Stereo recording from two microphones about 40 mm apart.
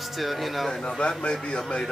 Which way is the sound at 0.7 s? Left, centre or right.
Left.